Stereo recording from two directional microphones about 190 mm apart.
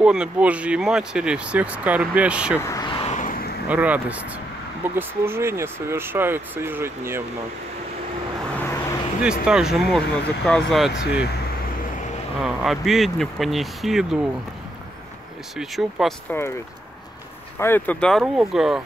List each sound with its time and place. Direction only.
0.0 s speech: 5° right (ahead or behind)
2.6 s vehicle: 20° left (ahead or behind)
3.1 s vehicle: 45° left (ahead or behind)
3.6 s speech: 10° right (ahead or behind)
9.2 s speech: 5° right (ahead or behind)
12.4 s speech: centre (ahead or behind)
15.5 s speech: centre (ahead or behind)
17.6 s speech: 10° left (ahead or behind)